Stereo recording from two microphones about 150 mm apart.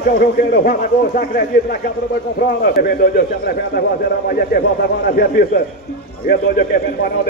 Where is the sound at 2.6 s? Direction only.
90° left.